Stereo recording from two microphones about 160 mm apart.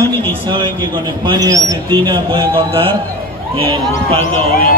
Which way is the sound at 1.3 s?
25° right (ahead or behind).